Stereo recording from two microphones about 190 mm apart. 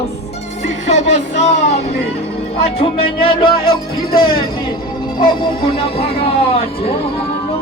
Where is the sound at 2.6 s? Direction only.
30° left (ahead or behind).